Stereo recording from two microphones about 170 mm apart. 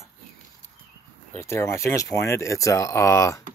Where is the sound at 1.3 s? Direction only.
15° left (ahead or behind).